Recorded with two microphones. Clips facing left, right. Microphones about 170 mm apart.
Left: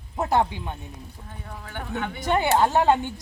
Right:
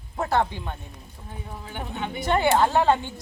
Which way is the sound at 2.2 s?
15° left (ahead or behind).